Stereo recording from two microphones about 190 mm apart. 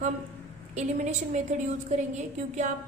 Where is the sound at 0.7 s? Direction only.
40° right (ahead or behind).